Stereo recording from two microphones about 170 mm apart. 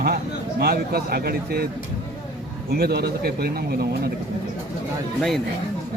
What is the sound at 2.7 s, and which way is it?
Speech, 70° right (ahead or behind).